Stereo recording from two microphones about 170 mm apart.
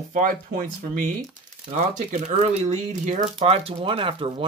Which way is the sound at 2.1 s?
40° right (ahead or behind).